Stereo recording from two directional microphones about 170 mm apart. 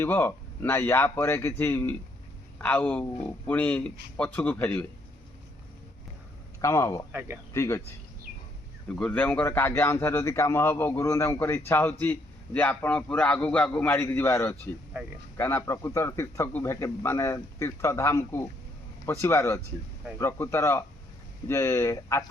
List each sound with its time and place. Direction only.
0.0 s a man's voice: 15° left (ahead or behind)
6.6 s a man's voice: 15° left (ahead or behind)
7.1 s speech: 10° right (ahead or behind)
7.5 s speech: 15° left (ahead or behind)
8.9 s a man's voice: 5° left (ahead or behind)